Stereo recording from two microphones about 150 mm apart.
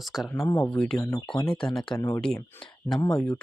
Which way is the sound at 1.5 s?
5° left (ahead or behind).